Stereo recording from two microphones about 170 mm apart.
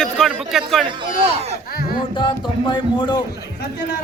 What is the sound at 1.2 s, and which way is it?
Speech, 40° right (ahead or behind).